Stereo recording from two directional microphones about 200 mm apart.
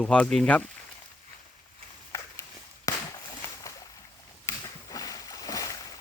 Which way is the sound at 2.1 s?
15° left (ahead or behind).